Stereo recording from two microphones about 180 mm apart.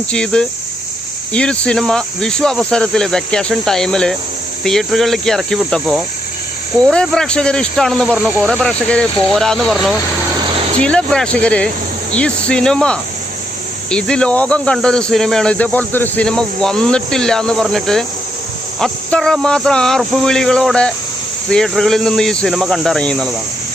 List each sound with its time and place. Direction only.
0.1 s speech: 5° left (ahead or behind)
10.6 s vehicle: 35° right (ahead or behind)
10.8 s speech: 5° left (ahead or behind)